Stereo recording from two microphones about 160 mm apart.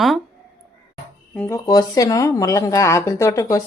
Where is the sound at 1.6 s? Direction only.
25° left (ahead or behind).